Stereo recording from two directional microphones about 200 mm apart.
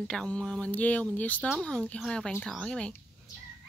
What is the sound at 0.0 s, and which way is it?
Speech, 5° left (ahead or behind).